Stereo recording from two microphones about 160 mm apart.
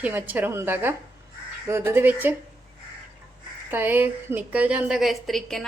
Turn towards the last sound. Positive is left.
turn(degrees=0)  # may be behind; listen again after turning